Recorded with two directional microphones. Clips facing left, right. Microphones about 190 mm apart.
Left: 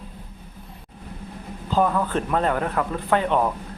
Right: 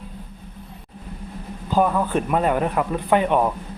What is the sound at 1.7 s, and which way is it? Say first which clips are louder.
A man's voice: right 2 dB; 10° right (ahead or behind).